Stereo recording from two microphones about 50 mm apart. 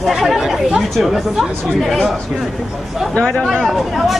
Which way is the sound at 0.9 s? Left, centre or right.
Centre.